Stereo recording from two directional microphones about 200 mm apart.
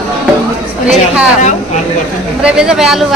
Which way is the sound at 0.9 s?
5° right (ahead or behind).